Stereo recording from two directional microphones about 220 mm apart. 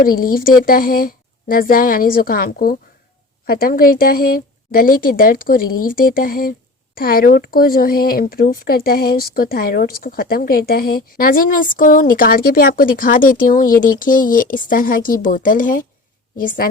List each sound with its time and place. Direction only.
0.0 s speech: 40° left (ahead or behind)